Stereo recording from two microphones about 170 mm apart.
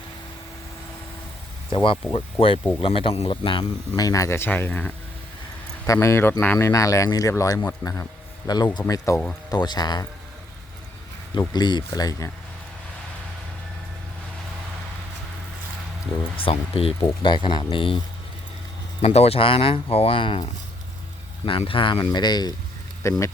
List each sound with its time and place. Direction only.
1.7 s speech: 30° left (ahead or behind)
11.3 s speech: 25° left (ahead or behind)
16.4 s speech: 35° left (ahead or behind)
19.0 s speech: 40° left (ahead or behind)
21.4 s speech: 30° left (ahead or behind)